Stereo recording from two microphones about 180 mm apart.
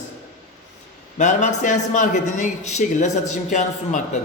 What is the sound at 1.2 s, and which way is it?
A man's voice, 45° left (ahead or behind).